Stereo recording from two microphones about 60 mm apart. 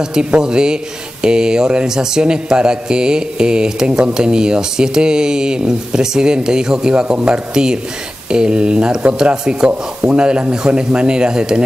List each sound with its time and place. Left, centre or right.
0.0 s speech: centre